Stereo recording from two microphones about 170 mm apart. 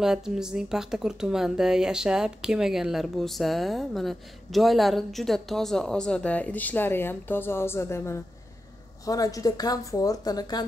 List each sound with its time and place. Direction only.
0.0 s a woman's voice: 5° right (ahead or behind); by 10.7 s 25° left (ahead or behind)